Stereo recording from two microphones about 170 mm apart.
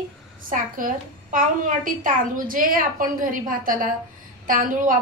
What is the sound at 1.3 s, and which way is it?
A woman's voice, 50° right (ahead or behind).